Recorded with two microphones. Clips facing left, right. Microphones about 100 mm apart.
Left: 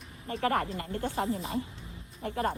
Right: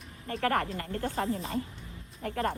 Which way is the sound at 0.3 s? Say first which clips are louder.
Even; 30° left (ahead or behind).